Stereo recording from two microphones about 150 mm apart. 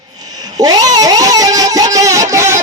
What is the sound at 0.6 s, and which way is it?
Cat, 25° right (ahead or behind).